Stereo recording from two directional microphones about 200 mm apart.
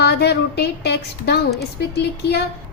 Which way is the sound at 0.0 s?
55° left (ahead or behind).